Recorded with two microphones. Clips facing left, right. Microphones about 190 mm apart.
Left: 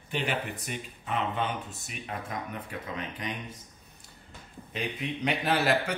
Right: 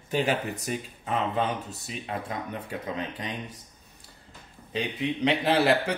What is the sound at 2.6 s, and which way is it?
Speech, 30° right (ahead or behind).